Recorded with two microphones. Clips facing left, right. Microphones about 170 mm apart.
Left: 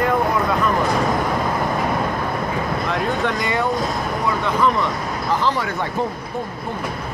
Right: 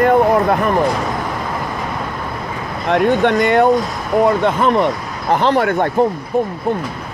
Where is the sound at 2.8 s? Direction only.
65° right (ahead or behind).